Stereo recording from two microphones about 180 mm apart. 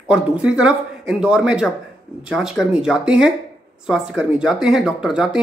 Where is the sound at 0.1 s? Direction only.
5° right (ahead or behind).